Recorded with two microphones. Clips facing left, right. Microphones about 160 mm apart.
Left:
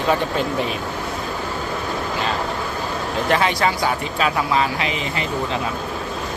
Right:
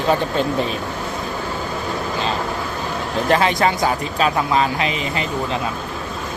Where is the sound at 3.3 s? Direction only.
40° right (ahead or behind).